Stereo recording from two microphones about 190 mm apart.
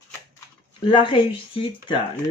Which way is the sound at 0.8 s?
25° left (ahead or behind).